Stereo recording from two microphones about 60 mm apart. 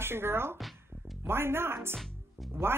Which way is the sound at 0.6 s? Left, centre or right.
Centre.